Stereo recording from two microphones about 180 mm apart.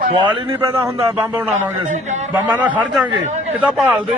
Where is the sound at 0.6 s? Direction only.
15° right (ahead or behind).